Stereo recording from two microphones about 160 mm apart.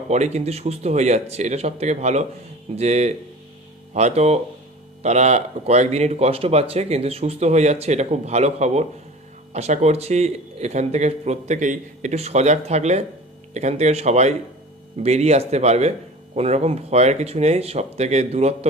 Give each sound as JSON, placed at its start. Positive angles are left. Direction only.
{"t": 0.1, "sound": "speech", "side_deg": -45}